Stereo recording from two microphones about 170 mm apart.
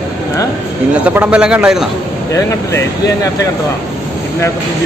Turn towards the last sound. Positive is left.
turn(degrees=15)  # may be behind; listen again after turning